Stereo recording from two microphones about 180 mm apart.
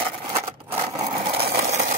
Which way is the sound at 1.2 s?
35° right (ahead or behind).